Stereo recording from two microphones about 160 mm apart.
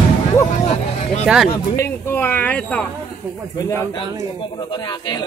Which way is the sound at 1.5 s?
15° left (ahead or behind).